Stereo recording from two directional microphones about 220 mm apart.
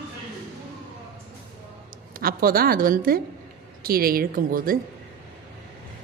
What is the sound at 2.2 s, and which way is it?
A woman's voice, 40° right (ahead or behind).